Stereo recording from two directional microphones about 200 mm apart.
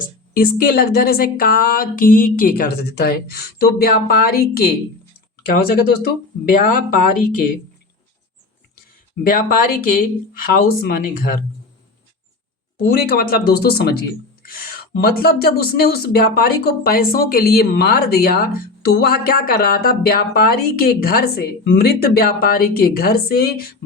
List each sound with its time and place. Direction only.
0.0 s speech: 45° left (ahead or behind)
9.2 s speech: 45° left (ahead or behind)
12.9 s speech: 50° left (ahead or behind)